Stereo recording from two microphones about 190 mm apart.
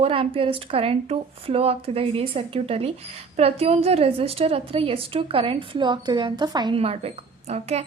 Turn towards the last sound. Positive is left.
turn(degrees=-35)  # may be behind; listen again after turning